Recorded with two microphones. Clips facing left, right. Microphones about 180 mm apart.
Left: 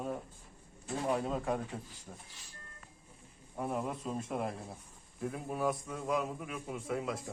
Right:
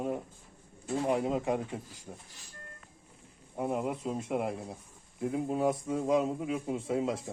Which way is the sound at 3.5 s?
15° right (ahead or behind).